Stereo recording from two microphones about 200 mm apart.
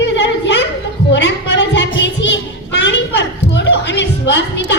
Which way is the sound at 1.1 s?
60° left (ahead or behind).